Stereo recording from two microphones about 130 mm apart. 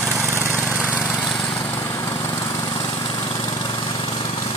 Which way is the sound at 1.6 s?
25° left (ahead or behind).